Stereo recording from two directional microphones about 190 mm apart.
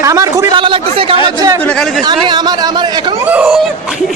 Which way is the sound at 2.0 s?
25° right (ahead or behind).